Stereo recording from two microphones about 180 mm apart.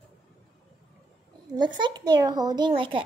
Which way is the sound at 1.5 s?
25° right (ahead or behind).